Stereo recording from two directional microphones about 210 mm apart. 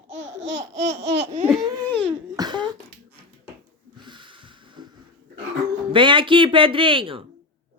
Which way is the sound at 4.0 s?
20° right (ahead or behind).